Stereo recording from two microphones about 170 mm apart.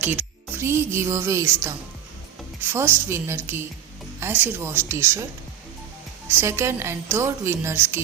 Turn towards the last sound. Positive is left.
turn(degrees=-15)  # may be behind; listen again after turning